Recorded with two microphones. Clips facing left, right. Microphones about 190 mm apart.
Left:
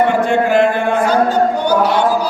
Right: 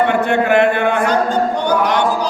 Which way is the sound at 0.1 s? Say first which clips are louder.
Left 1 dB; 60° right (ahead or behind).